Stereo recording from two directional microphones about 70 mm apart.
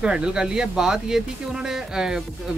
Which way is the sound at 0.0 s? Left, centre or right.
Centre.